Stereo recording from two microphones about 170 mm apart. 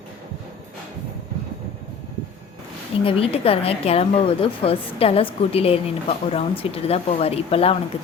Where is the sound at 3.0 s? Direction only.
35° left (ahead or behind).